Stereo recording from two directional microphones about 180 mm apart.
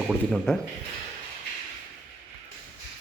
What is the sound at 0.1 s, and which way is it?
Speech, centre (ahead or behind).